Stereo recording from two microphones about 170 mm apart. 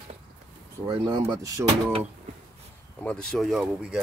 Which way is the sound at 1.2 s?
20° right (ahead or behind).